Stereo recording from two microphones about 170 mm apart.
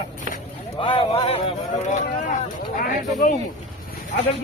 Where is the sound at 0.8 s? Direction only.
30° left (ahead or behind).